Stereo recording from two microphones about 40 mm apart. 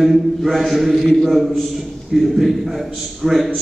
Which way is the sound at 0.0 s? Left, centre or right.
Centre.